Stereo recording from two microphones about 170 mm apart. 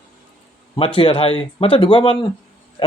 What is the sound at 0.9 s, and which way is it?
Speech, 30° left (ahead or behind).